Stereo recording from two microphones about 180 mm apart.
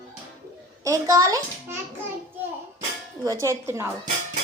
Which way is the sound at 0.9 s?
15° right (ahead or behind).